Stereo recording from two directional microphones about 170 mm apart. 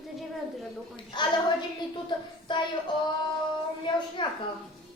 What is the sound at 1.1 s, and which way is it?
Speech, 25° left (ahead or behind).